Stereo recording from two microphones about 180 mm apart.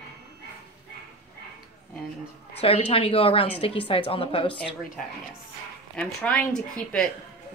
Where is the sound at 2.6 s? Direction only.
30° left (ahead or behind).